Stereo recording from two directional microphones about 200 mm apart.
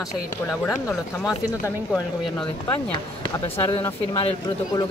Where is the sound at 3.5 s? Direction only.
25° left (ahead or behind).